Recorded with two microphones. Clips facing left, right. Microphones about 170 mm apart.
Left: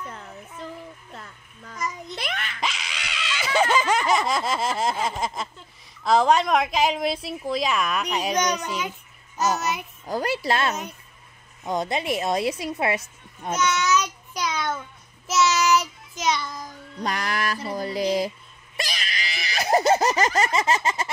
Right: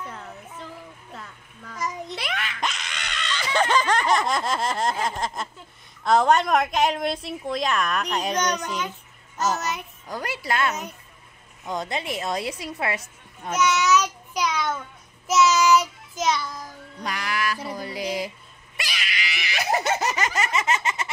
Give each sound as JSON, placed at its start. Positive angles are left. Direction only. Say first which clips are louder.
{"t": 1.8, "sound": "giggle", "louder": "right 1 dB", "side_deg": 0}
{"t": 6.0, "sound": "a woman's voice", "louder": "even", "side_deg": 0}
{"t": 10.0, "sound": "a woman's voice", "louder": "left 5 dB", "side_deg": 30}
{"t": 13.6, "sound": "a woman's voice", "louder": "right 2 dB", "side_deg": -5}
{"t": 16.2, "sound": "a woman's voice", "louder": "right 1 dB", "side_deg": -5}
{"t": 17.0, "sound": "a woman's voice", "louder": "left 1 dB", "side_deg": 40}
{"t": 18.8, "sound": "screaming", "louder": "left 1 dB", "side_deg": 40}